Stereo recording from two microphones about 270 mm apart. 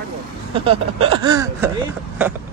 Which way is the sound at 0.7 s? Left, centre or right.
Right.